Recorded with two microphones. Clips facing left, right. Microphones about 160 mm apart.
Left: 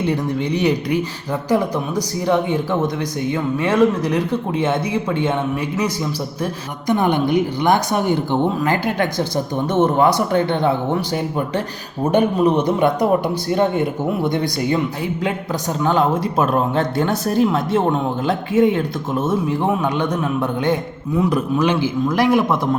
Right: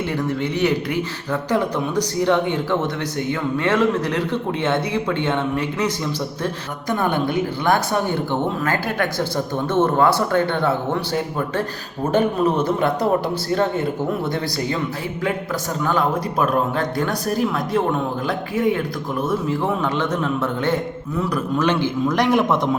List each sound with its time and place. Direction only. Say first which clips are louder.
0.0 s a woman's voice: left 2 dB; 15° left (ahead or behind)
15.8 s a man's voice: left 4 dB; 25° left (ahead or behind); by 22.7 s 5° left (ahead or behind)